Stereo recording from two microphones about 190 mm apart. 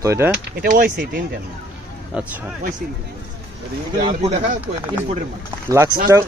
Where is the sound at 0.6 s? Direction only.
50° right (ahead or behind).